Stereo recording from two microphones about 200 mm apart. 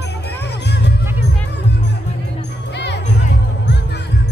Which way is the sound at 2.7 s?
60° left (ahead or behind).